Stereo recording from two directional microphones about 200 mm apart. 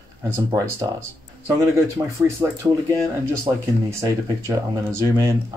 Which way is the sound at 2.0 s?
15° right (ahead or behind).